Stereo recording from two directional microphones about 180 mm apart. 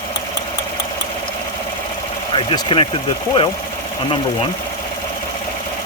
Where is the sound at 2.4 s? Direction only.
25° left (ahead or behind).